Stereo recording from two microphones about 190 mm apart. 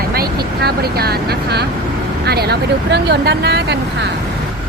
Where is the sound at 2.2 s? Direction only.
60° right (ahead or behind).